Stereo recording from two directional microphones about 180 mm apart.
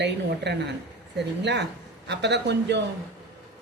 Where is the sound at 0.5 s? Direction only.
75° right (ahead or behind).